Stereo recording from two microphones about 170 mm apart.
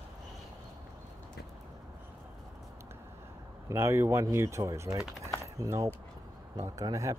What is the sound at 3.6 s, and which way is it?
Speech, 15° right (ahead or behind).